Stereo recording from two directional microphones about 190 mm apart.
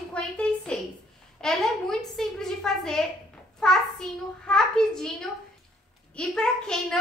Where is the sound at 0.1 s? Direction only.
5° left (ahead or behind).